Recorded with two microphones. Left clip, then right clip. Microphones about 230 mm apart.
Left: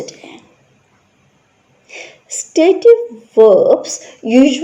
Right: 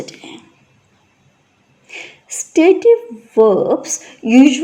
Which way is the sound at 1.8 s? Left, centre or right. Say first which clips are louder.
Even; right.